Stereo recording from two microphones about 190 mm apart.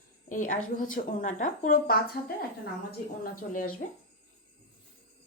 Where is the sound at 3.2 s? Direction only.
50° left (ahead or behind).